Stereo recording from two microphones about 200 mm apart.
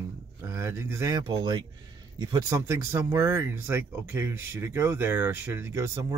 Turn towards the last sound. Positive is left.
turn(degrees=-15)  # may be behind; listen again after turning